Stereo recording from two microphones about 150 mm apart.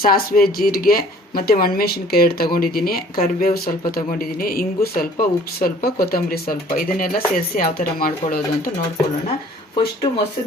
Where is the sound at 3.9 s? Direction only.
80° left.